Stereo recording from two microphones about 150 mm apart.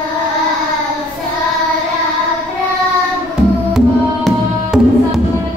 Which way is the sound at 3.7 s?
Centre (ahead or behind).